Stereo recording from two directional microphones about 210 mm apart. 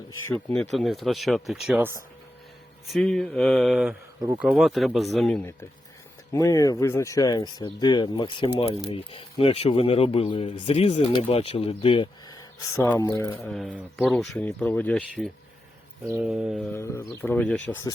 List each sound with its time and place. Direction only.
0.3 s speech: 5° left (ahead or behind); by 12.0 s 25° left (ahead or behind)
12.6 s speech: 15° left (ahead or behind)
13.5 s speech: centre (ahead or behind)
16.0 s speech: 10° right (ahead or behind)
16.7 s speech: 15° left (ahead or behind)